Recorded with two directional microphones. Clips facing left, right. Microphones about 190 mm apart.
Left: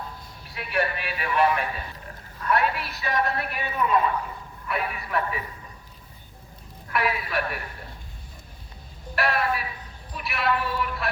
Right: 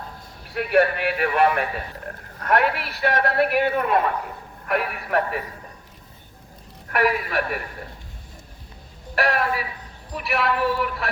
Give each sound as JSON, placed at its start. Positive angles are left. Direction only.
{"t": 0.5, "sound": "a man's voice", "side_deg": -60}
{"t": 2.0, "sound": "a man's voice", "side_deg": -70}
{"t": 6.9, "sound": "a man's voice", "side_deg": -70}
{"t": 9.1, "sound": "a woman's voice", "side_deg": -85}